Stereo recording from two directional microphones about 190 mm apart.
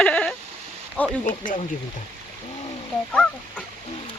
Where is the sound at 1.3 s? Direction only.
45° left (ahead or behind).